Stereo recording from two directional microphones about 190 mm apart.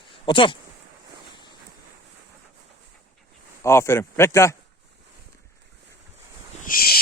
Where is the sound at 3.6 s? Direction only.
15° left (ahead or behind).